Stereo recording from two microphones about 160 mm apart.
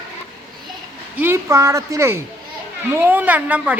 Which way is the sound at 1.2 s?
15° right (ahead or behind).